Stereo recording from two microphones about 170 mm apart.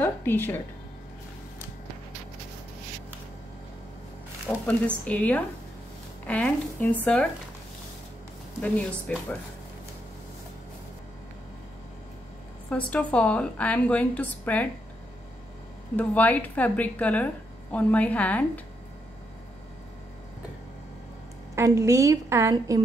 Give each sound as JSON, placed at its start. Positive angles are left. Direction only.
{"t": 0.0, "sound": "speech", "side_deg": 10}
{"t": 4.6, "sound": "a woman's voice", "side_deg": 10}
{"t": 8.5, "sound": "a woman's voice", "side_deg": 5}
{"t": 12.6, "sound": "a woman's voice", "side_deg": 5}
{"t": 16.0, "sound": "a woman's voice", "side_deg": 10}
{"t": 21.5, "sound": "a woman's voice", "side_deg": -15}